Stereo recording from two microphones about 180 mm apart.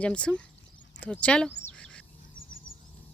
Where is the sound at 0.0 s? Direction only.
5° left (ahead or behind).